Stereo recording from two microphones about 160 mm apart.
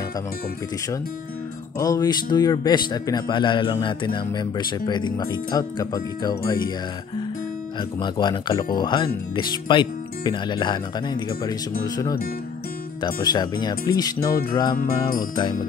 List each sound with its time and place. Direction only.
1.8 s a man's voice: 20° left (ahead or behind)
8.0 s a man's voice: 30° left (ahead or behind)
14.8 s music: 65° left (ahead or behind)
15.1 s music: 30° left (ahead or behind)